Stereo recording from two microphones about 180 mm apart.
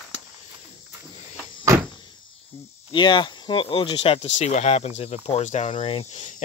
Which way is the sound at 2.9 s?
25° left (ahead or behind).